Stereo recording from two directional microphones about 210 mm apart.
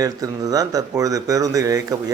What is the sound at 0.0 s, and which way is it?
Speech, 15° right (ahead or behind).